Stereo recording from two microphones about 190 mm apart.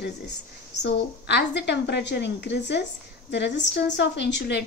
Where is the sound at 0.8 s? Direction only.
65° left (ahead or behind).